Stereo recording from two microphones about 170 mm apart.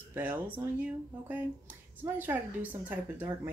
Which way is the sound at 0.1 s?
10° right (ahead or behind).